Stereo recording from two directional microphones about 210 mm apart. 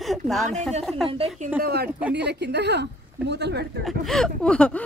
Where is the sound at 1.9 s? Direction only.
5° right (ahead or behind).